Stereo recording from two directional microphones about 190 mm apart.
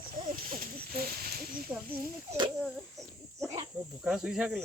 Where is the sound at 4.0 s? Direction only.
5° right (ahead or behind).